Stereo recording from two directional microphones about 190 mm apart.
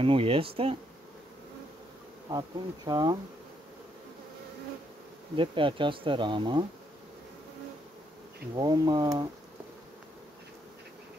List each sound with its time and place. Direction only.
0.0 s speech: 30° right (ahead or behind)
2.2 s speech: 20° right (ahead or behind)
5.3 s speech: 25° right (ahead or behind)
8.5 s speech: 20° right (ahead or behind)